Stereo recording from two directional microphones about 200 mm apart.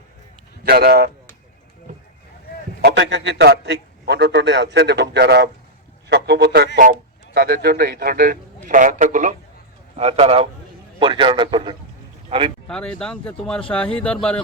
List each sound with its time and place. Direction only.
0.6 s a man's voice: 50° right (ahead or behind)
2.8 s a man's voice: 60° right (ahead or behind); by 11.8 s 25° right (ahead or behind)
12.6 s speech: 5° left (ahead or behind)